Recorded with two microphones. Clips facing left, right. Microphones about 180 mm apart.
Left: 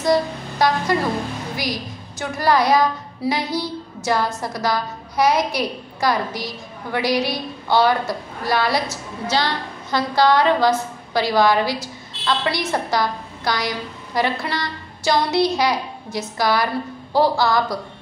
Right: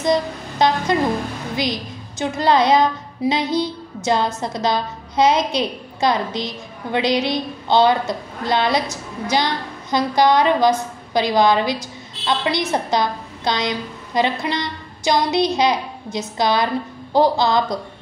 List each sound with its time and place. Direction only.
0.0 s music: 20° right (ahead or behind)
1.6 s a woman's voice: 20° right (ahead or behind)